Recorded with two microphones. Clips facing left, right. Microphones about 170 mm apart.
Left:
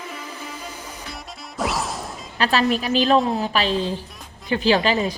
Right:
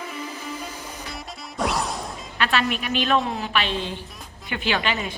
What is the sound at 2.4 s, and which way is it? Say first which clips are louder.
A woman's voice: left 4 dB; 35° left (ahead or behind).